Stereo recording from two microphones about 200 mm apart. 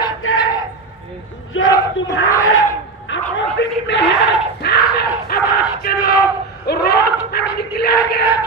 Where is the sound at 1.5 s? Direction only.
75° left (ahead or behind).